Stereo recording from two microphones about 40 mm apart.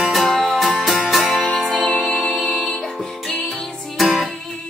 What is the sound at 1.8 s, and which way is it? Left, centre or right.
Music, centre.